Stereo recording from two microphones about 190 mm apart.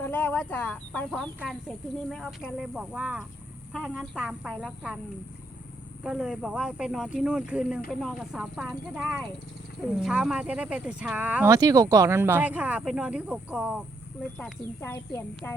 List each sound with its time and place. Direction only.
0.0 s speech: 10° left (ahead or behind)
6.0 s speech: 5° right (ahead or behind)
11.5 s speech: 20° right (ahead or behind)
14.3 s speech: 5° left (ahead or behind)